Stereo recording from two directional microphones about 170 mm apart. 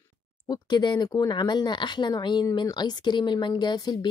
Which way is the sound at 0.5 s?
25° left (ahead or behind).